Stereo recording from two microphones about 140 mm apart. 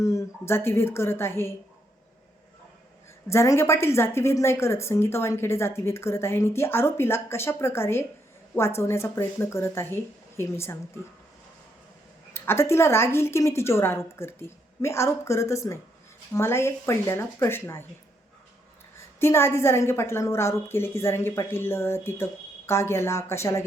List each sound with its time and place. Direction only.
0.0 s a woman's voice: 20° left (ahead or behind)
3.2 s a woman's voice: 20° left (ahead or behind)
12.3 s a woman's voice: 20° left (ahead or behind)
19.2 s a woman's voice: 20° left (ahead or behind)